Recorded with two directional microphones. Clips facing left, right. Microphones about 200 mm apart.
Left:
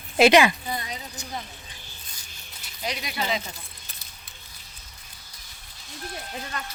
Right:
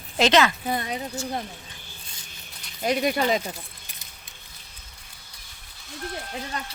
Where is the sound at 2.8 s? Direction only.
50° right (ahead or behind).